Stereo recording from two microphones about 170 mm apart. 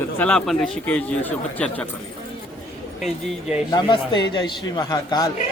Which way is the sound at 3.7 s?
25° left (ahead or behind).